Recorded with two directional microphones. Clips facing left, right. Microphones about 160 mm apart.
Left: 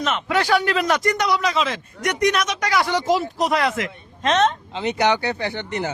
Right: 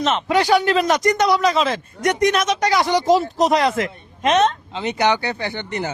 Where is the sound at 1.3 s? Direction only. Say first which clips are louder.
Right 4 dB; 40° right (ahead or behind).